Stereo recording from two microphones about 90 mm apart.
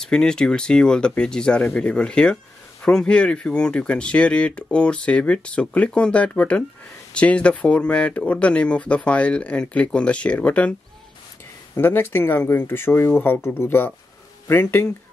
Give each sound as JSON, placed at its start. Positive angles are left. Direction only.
{"t": 0.0, "sound": "speech", "side_deg": 10}
{"t": 11.7, "sound": "speech", "side_deg": 25}